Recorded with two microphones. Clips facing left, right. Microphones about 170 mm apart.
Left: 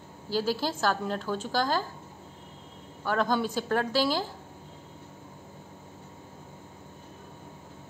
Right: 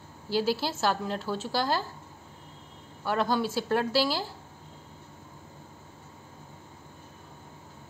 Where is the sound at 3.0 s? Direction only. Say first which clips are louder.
Even; 5° right (ahead or behind).